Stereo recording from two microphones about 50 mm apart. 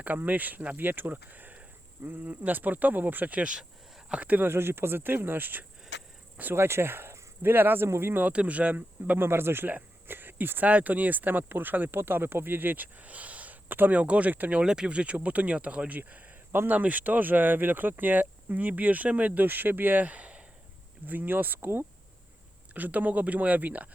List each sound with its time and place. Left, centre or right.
0.0 s speech: right
4.4 s speech: right
6.5 s speech: right
8.2 s speech: right
9.1 s speech: right
9.6 s cricket: right
10.7 s speech: right
13.9 s speech: right
14.6 s speech: centre
21.1 s speech: right
22.7 s speech: right